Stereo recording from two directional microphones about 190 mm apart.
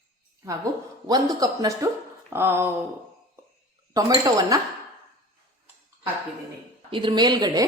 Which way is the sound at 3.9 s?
20° right (ahead or behind).